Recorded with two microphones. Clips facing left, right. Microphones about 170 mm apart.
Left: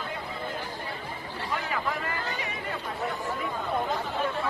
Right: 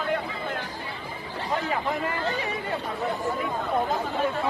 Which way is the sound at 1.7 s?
25° right (ahead or behind).